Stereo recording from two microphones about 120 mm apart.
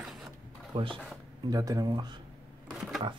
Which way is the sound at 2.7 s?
5° right (ahead or behind).